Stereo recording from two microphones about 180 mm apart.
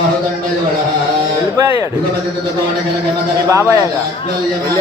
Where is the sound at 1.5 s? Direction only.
15° right (ahead or behind).